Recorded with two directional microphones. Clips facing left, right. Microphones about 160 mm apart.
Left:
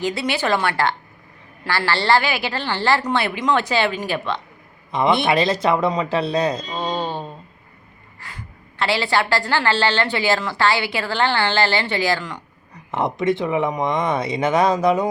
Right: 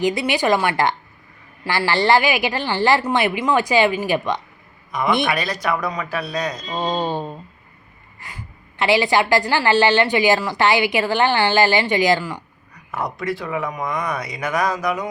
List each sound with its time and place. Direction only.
0.0 s a woman's voice: 15° right (ahead or behind)
4.9 s a man's voice: 25° left (ahead or behind)
6.7 s a woman's voice: 15° right (ahead or behind)
8.8 s a woman's voice: 15° right (ahead or behind)
12.9 s speech: 25° left (ahead or behind)